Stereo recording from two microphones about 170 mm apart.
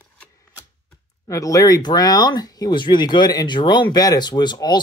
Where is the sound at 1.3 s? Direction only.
20° left (ahead or behind).